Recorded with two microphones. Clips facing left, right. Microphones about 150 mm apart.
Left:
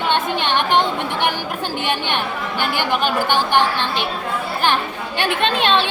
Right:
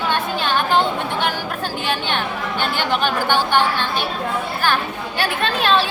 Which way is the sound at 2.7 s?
10° left (ahead or behind).